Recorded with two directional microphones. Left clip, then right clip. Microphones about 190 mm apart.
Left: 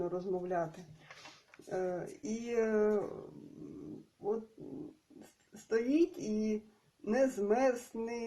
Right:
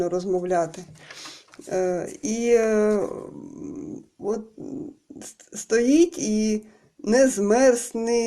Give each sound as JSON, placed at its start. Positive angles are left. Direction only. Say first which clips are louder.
{"t": 0.0, "sound": "speech", "louder": "right 12 dB", "side_deg": -40}
{"t": 1.7, "sound": "speech", "louder": "right 12 dB", "side_deg": -35}
{"t": 5.6, "sound": "speech", "louder": "right 12 dB", "side_deg": -40}